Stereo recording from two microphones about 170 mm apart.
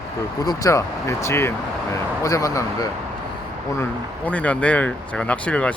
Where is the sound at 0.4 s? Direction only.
20° left (ahead or behind).